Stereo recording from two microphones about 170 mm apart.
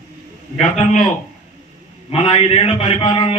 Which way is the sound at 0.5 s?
40° left (ahead or behind).